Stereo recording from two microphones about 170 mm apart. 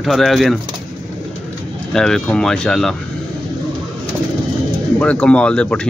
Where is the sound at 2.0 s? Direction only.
5° left (ahead or behind).